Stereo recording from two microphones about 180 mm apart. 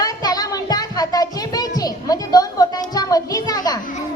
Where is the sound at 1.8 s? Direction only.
20° left (ahead or behind).